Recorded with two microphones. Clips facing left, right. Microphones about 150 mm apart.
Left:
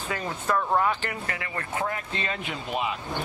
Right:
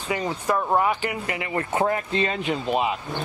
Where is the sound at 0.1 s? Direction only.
15° right (ahead or behind); by 2.9 s 35° right (ahead or behind).